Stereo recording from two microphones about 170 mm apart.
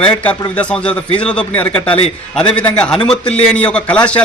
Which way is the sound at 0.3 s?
5° left (ahead or behind).